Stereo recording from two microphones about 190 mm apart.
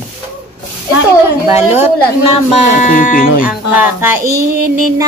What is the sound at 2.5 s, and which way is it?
Speech, 40° left (ahead or behind).